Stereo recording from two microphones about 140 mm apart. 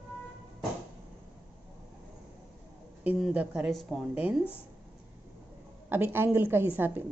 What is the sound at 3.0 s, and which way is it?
A woman's voice, 10° right (ahead or behind).